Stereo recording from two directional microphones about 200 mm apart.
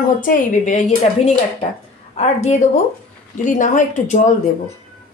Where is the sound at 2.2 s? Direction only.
35° left (ahead or behind).